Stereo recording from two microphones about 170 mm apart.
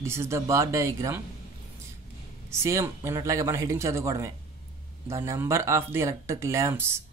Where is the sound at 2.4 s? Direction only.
15° right (ahead or behind).